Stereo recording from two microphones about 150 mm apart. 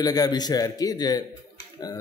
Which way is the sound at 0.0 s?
25° left (ahead or behind).